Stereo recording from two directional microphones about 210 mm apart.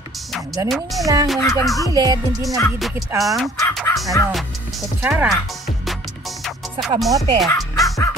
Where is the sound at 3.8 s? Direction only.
Centre (ahead or behind).